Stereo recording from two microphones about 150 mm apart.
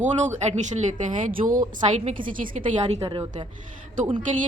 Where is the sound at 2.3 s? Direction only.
60° right (ahead or behind).